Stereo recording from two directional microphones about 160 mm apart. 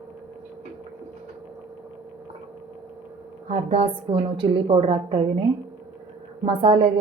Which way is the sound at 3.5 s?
40° right (ahead or behind).